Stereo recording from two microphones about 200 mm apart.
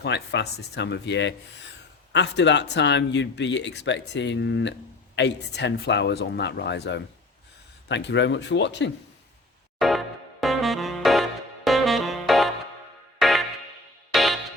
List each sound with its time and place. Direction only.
0.0 s speech: 55° left (ahead or behind)
9.7 s music: centre (ahead or behind)
10.4 s saxophone: centre (ahead or behind)
13.1 s music: centre (ahead or behind)